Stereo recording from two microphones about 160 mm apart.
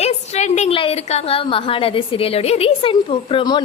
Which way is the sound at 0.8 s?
40° left (ahead or behind).